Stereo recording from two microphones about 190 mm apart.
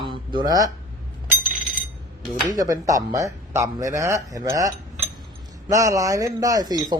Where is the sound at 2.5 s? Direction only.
20° right (ahead or behind).